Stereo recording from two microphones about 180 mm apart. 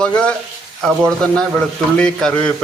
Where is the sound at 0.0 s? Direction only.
5° left (ahead or behind).